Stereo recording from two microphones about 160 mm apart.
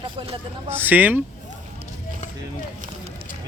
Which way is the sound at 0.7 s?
10° right (ahead or behind).